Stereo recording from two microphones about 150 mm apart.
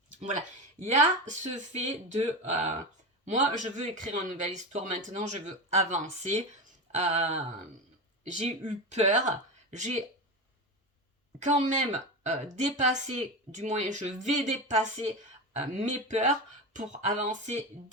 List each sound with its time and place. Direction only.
0.8 s speech: 50° right (ahead or behind)
11.3 s speech: 50° right (ahead or behind)